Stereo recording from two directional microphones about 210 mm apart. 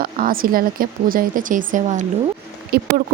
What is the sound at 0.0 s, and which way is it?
Speech, 45° right (ahead or behind).